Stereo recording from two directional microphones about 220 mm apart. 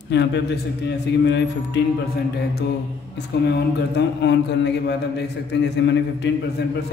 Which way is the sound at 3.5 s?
50° left (ahead or behind).